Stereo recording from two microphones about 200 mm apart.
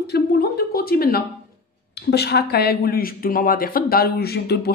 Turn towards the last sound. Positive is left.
turn(degrees=50)  # may be behind; listen again after turning